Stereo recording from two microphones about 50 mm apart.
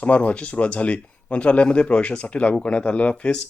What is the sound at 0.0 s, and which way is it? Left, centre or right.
Speech, left.